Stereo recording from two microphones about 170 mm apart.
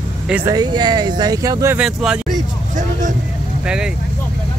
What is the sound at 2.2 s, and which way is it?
Vehicle, 45° right (ahead or behind).